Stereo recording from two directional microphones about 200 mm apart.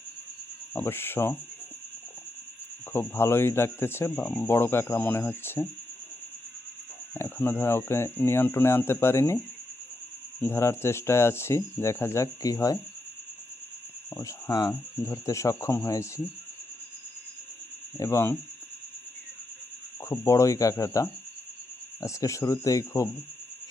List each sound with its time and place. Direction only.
0.7 s speech: 10° left (ahead or behind)
2.9 s speech: 10° left (ahead or behind)
7.1 s speech: 10° left (ahead or behind)
10.4 s speech: 10° left (ahead or behind)
14.1 s speech: 15° left (ahead or behind)
17.9 s speech: 15° left (ahead or behind)
20.1 s speech: 15° left (ahead or behind)